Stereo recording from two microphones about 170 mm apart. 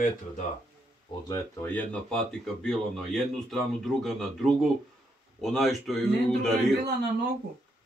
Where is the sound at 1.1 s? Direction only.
25° left (ahead or behind).